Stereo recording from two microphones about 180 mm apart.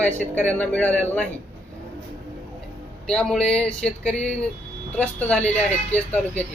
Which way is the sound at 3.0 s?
5° left (ahead or behind).